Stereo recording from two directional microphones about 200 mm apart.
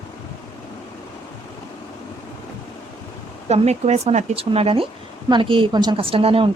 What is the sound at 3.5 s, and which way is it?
A woman's voice, 35° right (ahead or behind).